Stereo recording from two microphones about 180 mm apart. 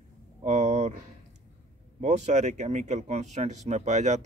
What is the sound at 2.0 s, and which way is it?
Speech, 40° right (ahead or behind).